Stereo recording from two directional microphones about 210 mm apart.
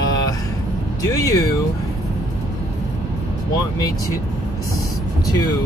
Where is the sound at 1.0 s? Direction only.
15° left (ahead or behind).